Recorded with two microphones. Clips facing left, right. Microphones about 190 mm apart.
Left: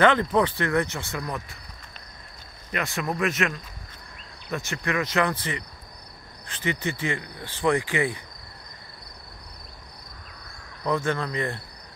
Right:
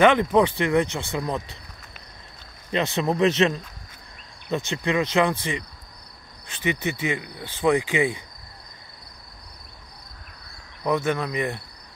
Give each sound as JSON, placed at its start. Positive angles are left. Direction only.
{"t": 0.0, "sound": "speech", "side_deg": -15}
{"t": 2.7, "sound": "speech", "side_deg": -25}
{"t": 6.6, "sound": "speech", "side_deg": -20}
{"t": 10.8, "sound": "speech", "side_deg": -15}